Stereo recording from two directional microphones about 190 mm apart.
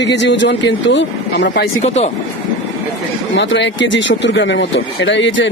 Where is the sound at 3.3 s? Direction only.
70° left (ahead or behind).